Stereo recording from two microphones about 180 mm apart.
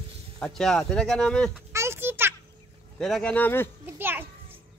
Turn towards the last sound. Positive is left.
turn(degrees=-10)  # may be behind; listen again after turning